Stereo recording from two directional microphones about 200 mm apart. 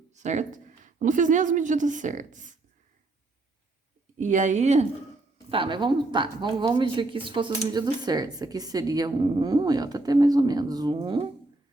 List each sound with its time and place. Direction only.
0.1 s speech: 35° right (ahead or behind)
4.2 s speech: 40° right (ahead or behind)